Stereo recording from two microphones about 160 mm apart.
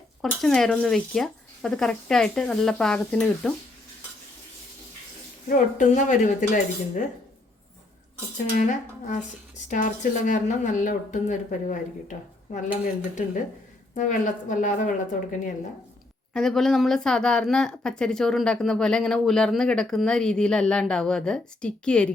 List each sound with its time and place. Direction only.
0.2 s speech: centre (ahead or behind)
5.5 s speech: 50° left (ahead or behind)
8.5 s a woman's voice: 50° left (ahead or behind)
16.3 s speech: 5° left (ahead or behind)